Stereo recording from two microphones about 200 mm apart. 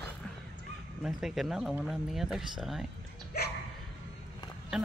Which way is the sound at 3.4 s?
50° left (ahead or behind).